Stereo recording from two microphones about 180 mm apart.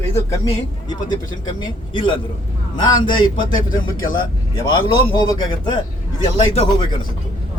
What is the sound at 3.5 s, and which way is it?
Speech, 50° left (ahead or behind).